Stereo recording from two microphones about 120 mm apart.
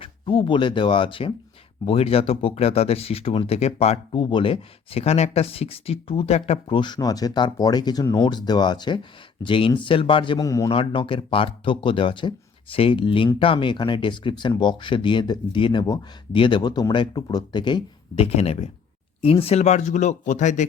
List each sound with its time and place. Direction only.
0.0 s speech: 45° left (ahead or behind)
6.7 s speech: 35° left (ahead or behind)
10.4 s a man's voice: 30° left (ahead or behind)
10.7 s speech: 45° left (ahead or behind)
18.2 s speech: 60° left (ahead or behind); by 20.7 s 90° left